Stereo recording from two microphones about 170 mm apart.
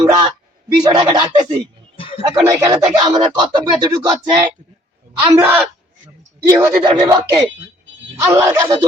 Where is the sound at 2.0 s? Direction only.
30° left (ahead or behind).